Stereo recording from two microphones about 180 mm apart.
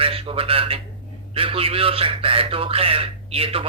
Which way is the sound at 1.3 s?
30° right (ahead or behind).